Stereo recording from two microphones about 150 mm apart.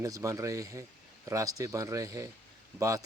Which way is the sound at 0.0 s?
20° right (ahead or behind).